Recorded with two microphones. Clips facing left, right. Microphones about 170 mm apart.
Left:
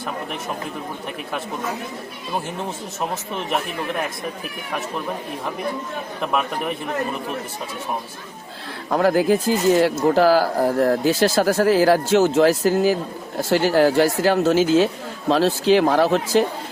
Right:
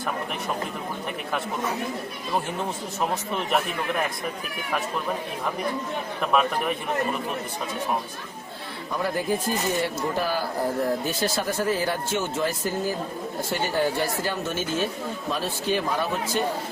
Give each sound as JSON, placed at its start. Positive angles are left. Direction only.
{"t": 8.9, "sound": "speech", "side_deg": 80}